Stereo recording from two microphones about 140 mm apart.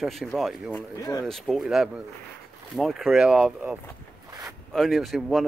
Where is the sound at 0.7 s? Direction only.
25° left (ahead or behind).